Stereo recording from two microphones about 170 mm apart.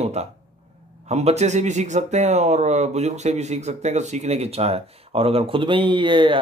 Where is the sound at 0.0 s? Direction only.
40° right (ahead or behind).